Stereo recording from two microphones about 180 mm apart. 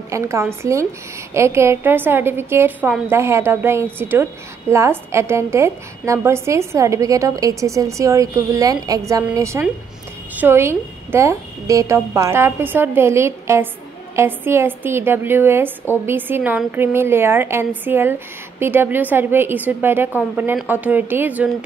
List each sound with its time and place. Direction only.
0.1 s a woman's voice: 15° right (ahead or behind)